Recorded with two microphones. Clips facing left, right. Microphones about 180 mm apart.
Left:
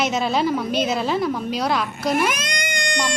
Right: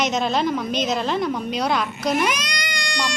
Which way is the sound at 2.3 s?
50° left (ahead or behind).